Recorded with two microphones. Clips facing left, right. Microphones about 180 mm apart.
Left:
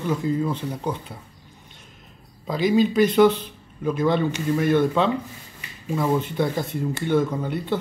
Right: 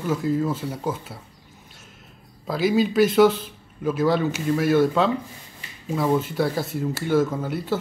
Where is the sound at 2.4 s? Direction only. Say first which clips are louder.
Left 1 dB; 5° right (ahead or behind).